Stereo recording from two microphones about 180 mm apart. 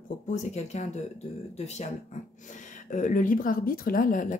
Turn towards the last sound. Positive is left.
turn(degrees=45)  # may be behind; listen again after turning